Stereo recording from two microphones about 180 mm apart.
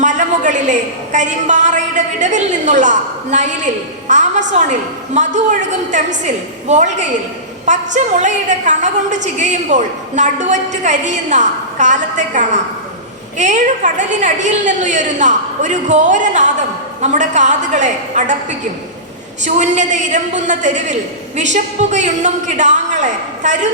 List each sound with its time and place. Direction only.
0.0 s a woman's voice: 40° right (ahead or behind)
19.5 s a woman's voice: 40° right (ahead or behind)